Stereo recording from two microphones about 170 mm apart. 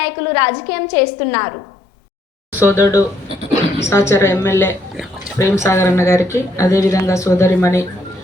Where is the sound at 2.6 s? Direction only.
15° left (ahead or behind).